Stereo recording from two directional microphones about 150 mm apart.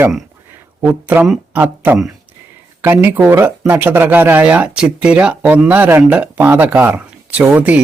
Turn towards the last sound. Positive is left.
turn(degrees=-10)  # may be behind; listen again after turning